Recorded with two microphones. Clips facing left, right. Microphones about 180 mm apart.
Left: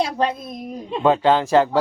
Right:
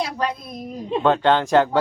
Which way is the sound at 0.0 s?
25° left (ahead or behind).